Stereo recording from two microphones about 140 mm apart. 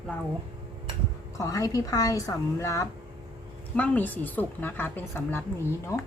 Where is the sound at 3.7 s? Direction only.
10° left (ahead or behind).